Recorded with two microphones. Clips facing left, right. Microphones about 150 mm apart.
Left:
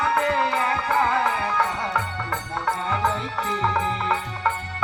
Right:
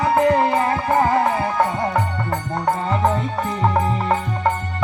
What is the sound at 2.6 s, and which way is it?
Music, 40° right (ahead or behind).